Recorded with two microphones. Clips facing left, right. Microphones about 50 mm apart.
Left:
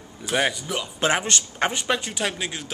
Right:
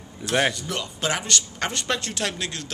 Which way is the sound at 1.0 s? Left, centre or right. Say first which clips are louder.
Left 4 dB; left.